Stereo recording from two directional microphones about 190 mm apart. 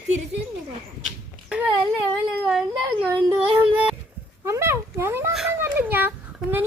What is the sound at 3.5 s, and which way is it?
Speech, 10° right (ahead or behind).